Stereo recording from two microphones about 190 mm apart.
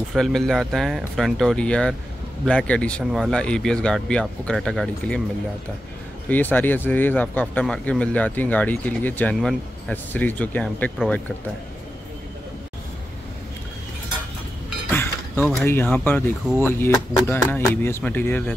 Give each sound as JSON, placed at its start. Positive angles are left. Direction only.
{"t": 0.1, "sound": "speech", "side_deg": 0}
{"t": 6.2, "sound": "speech", "side_deg": 10}
{"t": 14.9, "sound": "speech", "side_deg": 10}